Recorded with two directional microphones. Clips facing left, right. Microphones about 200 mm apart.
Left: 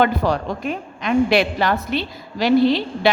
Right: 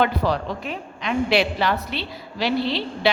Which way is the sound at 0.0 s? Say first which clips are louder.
Left 3 dB; 45° left (ahead or behind).